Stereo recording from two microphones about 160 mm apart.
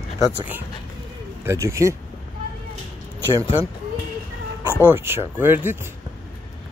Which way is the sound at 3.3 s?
15° right (ahead or behind).